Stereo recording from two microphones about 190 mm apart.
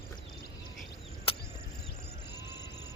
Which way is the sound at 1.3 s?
30° left (ahead or behind).